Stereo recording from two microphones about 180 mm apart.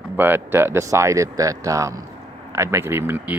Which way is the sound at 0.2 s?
10° right (ahead or behind).